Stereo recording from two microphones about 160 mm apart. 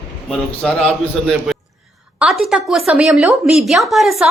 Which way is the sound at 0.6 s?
5° left (ahead or behind).